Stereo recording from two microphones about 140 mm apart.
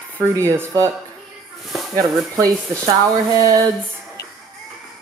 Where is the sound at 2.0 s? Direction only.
25° right (ahead or behind).